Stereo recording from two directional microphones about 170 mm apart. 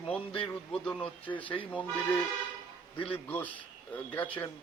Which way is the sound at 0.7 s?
5° left (ahead or behind).